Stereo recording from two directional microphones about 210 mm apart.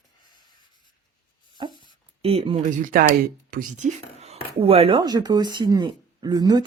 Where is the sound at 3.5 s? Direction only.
40° right (ahead or behind).